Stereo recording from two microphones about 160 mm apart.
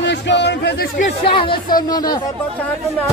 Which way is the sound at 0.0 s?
90° left.